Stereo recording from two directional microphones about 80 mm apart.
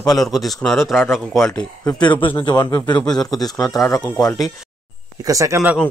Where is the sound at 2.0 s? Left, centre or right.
Left.